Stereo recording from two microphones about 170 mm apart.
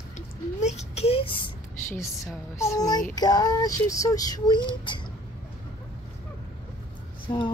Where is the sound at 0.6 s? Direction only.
40° left (ahead or behind).